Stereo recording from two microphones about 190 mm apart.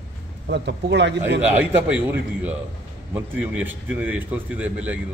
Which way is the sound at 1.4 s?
10° right (ahead or behind).